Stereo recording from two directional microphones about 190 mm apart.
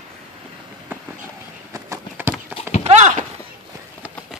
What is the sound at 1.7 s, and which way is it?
Clip-clop, 15° right (ahead or behind).